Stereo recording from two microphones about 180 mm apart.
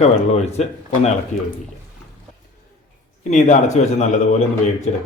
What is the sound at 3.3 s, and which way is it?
Speech, 40° left (ahead or behind).